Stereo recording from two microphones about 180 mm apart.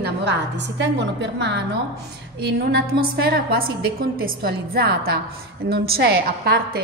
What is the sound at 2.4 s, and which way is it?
A woman's voice, 60° right (ahead or behind).